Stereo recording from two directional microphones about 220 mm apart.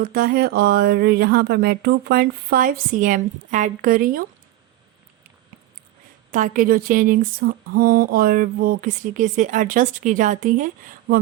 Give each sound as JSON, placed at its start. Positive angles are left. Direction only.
{"t": 0.0, "sound": "speech", "side_deg": -40}
{"t": 6.3, "sound": "speech", "side_deg": -35}